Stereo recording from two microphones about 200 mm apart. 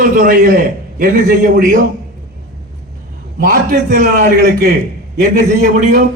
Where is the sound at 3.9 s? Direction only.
50° right (ahead or behind).